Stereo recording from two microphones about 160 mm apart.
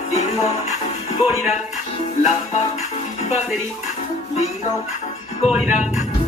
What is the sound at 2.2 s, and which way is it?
Music, 45° left (ahead or behind).